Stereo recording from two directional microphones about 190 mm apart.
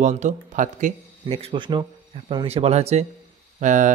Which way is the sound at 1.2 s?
30° right (ahead or behind).